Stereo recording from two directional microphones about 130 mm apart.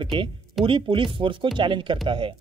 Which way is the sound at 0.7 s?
40° right (ahead or behind).